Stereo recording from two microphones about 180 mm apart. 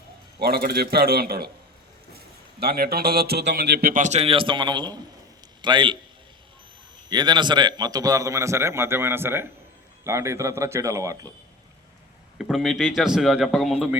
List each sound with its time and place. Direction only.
0.3 s a man's voice: 60° right (ahead or behind)
2.6 s a man's voice: 60° right (ahead or behind); by 6.0 s 25° right (ahead or behind)
7.1 s a man's voice: 25° right (ahead or behind)
12.4 s speech: centre (ahead or behind)